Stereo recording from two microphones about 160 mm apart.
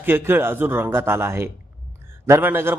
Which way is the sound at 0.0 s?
15° right (ahead or behind).